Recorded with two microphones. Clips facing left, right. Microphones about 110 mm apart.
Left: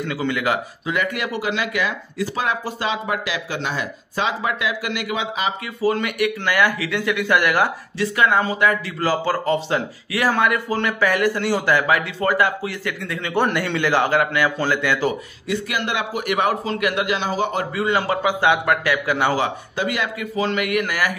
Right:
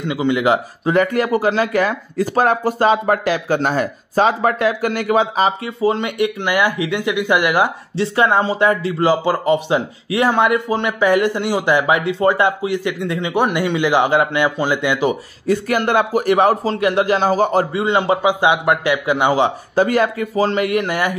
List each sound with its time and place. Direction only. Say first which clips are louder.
0.0 s a man's voice: right 5 dB; 20° right (ahead or behind)
1.0 s speech: right 8 dB; 40° right (ahead or behind)
5.8 s a man's voice: right 2 dB; 25° right (ahead or behind)
8.2 s a man's voice: right 3 dB; 30° right (ahead or behind)
15.4 s a man's voice: right 8 dB; 45° right (ahead or behind)
17.7 s a man's voice: right 4 dB; 25° right (ahead or behind)
19.7 s a man's voice: right 8 dB; 40° right (ahead or behind); by 21.2 s 25° right (ahead or behind)